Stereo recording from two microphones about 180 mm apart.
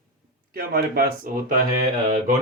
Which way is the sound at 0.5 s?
55° right (ahead or behind).